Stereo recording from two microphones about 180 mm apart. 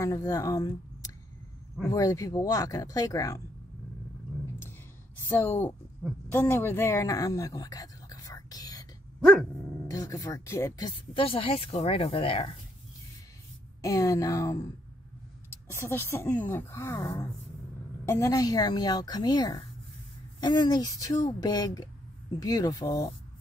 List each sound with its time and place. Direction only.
0.3 s speech: 20° left (ahead or behind)
5.3 s speech: 10° left (ahead or behind)
9.8 s speech: 20° left (ahead or behind)
13.7 s speech: 20° left (ahead or behind)
15.7 s speech: 10° left (ahead or behind)
18.0 s speech: 15° left (ahead or behind)